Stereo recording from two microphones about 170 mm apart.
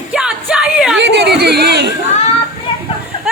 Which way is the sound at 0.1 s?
5° right (ahead or behind).